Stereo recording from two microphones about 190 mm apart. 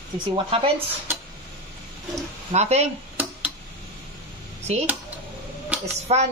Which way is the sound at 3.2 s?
10° right (ahead or behind).